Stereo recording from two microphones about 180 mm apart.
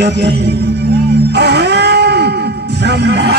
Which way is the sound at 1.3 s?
65° right (ahead or behind).